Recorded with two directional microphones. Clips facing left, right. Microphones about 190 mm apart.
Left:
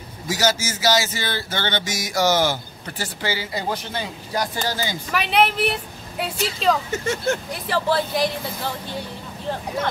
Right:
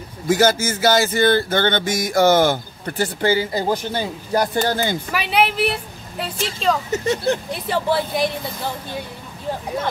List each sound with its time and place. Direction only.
0.3 s a sound: 55° right (ahead or behind)
4.4 s speech: 55° right (ahead or behind)
5.1 s a woman's voice: 5° right (ahead or behind)
6.9 s speech: 35° right (ahead or behind)
7.6 s speech: 15° right (ahead or behind)